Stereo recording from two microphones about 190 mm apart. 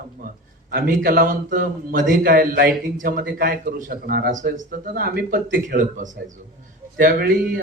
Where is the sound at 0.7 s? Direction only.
50° right (ahead or behind).